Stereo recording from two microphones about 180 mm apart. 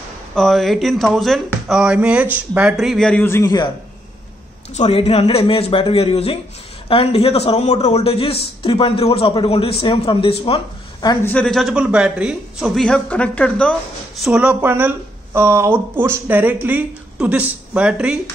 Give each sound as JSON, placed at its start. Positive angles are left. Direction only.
{"t": 0.3, "sound": "speech", "side_deg": 0}
{"t": 4.7, "sound": "a man's voice", "side_deg": 35}
{"t": 11.2, "sound": "speech", "side_deg": 5}
{"t": 14.2, "sound": "speech", "side_deg": -5}